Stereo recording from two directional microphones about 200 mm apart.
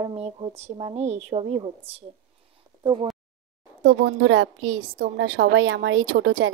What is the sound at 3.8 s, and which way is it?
A woman's voice, 70° right (ahead or behind).